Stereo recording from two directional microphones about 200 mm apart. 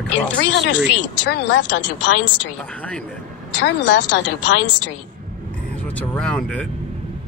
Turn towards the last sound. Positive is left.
turn(degrees=5)  # may be behind; listen again after turning